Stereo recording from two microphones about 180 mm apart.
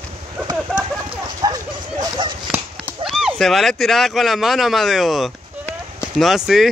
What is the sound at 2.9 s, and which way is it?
Speech, centre (ahead or behind).